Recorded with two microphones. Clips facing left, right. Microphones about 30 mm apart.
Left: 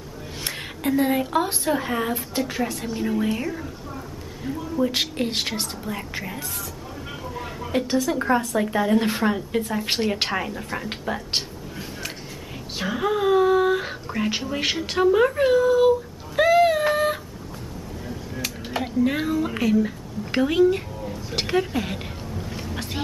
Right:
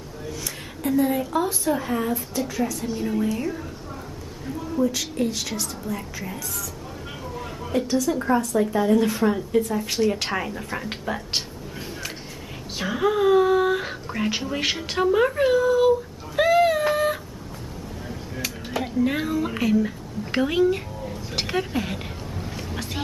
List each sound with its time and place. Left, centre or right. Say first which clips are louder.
0.4 s a woman's voice: left 3 dB; left
1.7 s a woman's voice: even; left
2.1 s a woman's voice: left 1 dB; left
4.9 s a woman's voice: left 2 dB; left
7.7 s a woman's voice: even; left
10.0 s a woman's voice: right 4 dB; centre
10.3 s a woman's voice: even; centre
12.7 s speech: right 1 dB; centre
16.3 s a sound: left 1 dB; centre
18.8 s a sound: left 1 dB; centre
22.8 s music: left 1 dB; centre